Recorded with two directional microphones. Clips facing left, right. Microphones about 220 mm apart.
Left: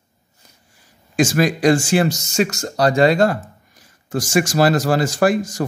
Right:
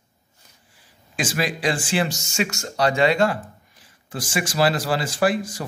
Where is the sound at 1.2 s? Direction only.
45° left (ahead or behind).